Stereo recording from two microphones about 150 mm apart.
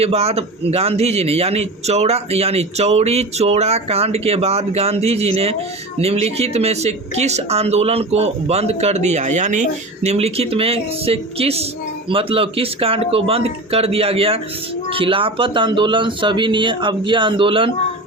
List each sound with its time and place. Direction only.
0.0 s speech: 45° right (ahead or behind)